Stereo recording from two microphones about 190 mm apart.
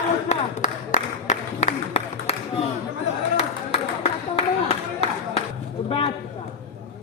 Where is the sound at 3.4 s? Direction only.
35° left (ahead or behind).